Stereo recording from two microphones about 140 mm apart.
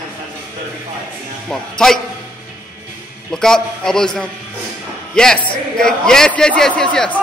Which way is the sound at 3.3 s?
5° left (ahead or behind).